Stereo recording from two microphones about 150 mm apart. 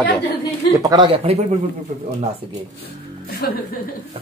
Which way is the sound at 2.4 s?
35° right (ahead or behind).